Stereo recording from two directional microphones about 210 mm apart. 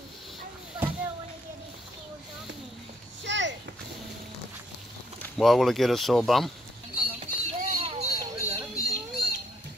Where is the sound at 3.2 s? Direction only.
60° right (ahead or behind).